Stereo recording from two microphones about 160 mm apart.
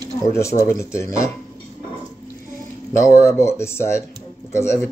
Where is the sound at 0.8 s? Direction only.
15° left (ahead or behind).